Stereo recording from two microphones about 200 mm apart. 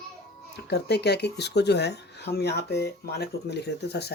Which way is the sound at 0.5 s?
55° left (ahead or behind).